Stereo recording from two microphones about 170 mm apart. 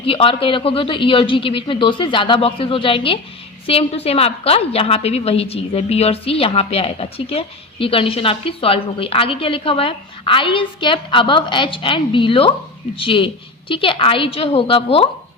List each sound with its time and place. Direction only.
0.0 s a woman's voice: 30° left (ahead or behind)